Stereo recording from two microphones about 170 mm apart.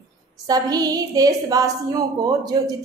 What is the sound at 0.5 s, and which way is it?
A woman's voice, 20° right (ahead or behind).